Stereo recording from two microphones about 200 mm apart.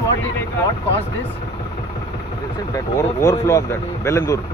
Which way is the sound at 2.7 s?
15° left (ahead or behind).